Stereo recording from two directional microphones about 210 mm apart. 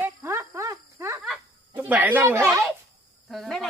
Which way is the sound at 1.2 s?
5° right (ahead or behind).